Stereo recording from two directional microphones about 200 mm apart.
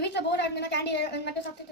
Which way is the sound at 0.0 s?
60° left (ahead or behind).